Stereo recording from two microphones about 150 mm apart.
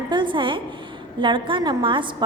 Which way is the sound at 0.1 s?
30° right (ahead or behind).